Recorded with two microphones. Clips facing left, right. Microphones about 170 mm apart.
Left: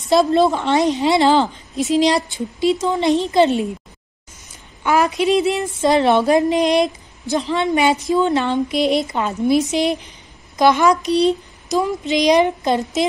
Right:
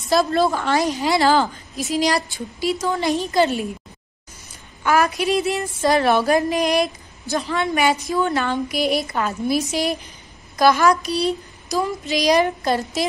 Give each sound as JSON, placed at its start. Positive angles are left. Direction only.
{"t": 0.1, "sound": "a woman's voice", "side_deg": 20}
{"t": 4.8, "sound": "a woman's voice", "side_deg": 20}